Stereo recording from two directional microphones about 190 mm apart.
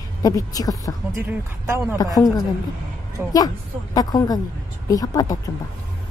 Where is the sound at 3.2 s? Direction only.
10° right (ahead or behind).